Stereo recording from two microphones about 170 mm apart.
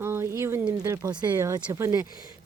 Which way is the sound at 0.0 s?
15° right (ahead or behind).